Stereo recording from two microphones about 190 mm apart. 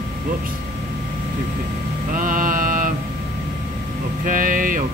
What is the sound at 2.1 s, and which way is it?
Mantra, 45° right (ahead or behind).